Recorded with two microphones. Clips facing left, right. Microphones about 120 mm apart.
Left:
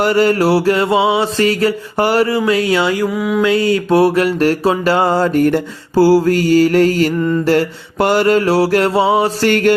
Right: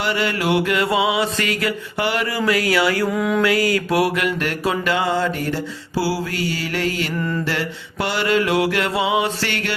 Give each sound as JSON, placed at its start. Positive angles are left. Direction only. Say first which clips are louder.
{"t": 0.0, "sound": "mantra", "louder": "left 9 dB", "side_deg": 40}
{"t": 2.4, "sound": "speech", "louder": "left 4 dB", "side_deg": 25}
{"t": 3.1, "sound": "mantra", "louder": "left 3 dB", "side_deg": 5}
{"t": 3.4, "sound": "mantra", "louder": "left 5 dB", "side_deg": 25}